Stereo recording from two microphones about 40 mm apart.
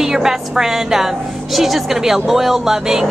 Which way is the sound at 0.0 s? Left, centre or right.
Centre.